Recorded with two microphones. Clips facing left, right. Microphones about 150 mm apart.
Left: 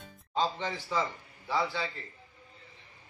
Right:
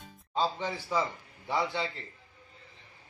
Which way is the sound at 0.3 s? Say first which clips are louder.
Even; 10° right (ahead or behind).